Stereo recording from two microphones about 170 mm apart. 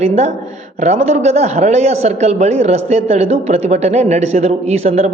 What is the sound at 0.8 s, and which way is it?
A man's voice, 40° right (ahead or behind).